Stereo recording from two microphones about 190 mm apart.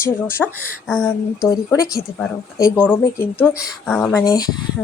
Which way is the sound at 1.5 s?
15° left (ahead or behind).